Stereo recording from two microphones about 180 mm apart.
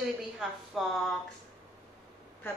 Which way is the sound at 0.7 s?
Centre (ahead or behind).